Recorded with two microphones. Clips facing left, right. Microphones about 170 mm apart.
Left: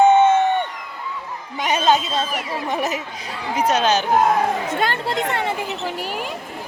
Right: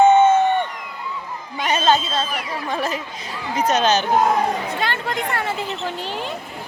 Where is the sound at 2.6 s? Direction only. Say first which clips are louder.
Left 1 dB; 20° left (ahead or behind).